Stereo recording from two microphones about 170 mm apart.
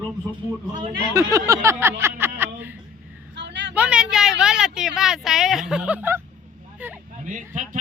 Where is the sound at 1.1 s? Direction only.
20° right (ahead or behind).